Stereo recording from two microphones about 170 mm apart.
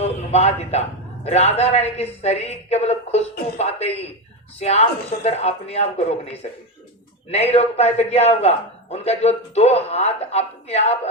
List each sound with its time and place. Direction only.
0.0 s a man's voice: 40° left (ahead or behind)